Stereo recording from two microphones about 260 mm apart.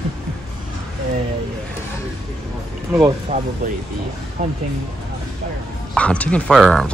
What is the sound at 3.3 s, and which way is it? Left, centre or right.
Speech, right.